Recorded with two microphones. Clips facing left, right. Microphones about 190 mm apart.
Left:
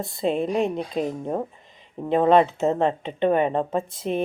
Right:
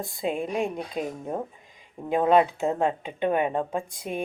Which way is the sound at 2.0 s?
5° right (ahead or behind).